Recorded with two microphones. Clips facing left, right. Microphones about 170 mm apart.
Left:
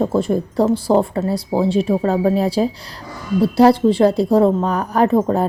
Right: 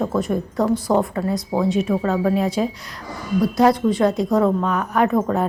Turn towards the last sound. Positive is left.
turn(degrees=30)  # may be behind; listen again after turning